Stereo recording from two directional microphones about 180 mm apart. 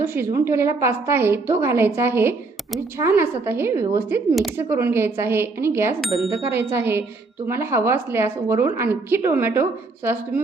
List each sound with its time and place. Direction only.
0.0 s a woman's voice: 15° right (ahead or behind)